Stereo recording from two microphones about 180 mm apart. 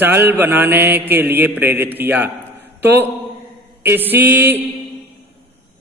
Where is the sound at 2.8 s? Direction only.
10° right (ahead or behind).